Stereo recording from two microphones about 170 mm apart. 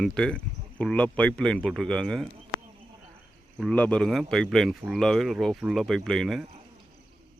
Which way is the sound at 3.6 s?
5° left (ahead or behind).